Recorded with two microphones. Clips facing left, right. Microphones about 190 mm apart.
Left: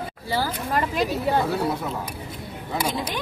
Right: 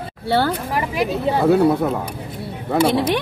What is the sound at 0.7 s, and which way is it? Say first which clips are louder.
Speech: right 2 dB; 10° right (ahead or behind).